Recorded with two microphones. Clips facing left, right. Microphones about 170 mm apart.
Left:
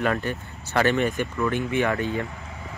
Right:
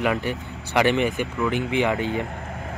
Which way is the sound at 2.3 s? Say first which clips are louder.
Right 5 dB; 55° right (ahead or behind).